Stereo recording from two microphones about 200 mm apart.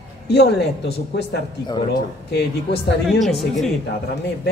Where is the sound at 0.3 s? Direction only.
55° left (ahead or behind).